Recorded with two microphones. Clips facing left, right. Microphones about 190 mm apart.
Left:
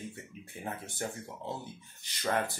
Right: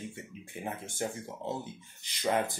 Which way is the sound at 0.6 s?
20° right (ahead or behind).